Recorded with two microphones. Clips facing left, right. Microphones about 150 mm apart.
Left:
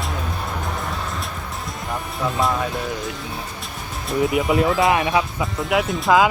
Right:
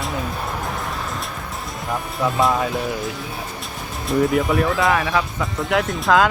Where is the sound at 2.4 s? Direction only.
Centre (ahead or behind).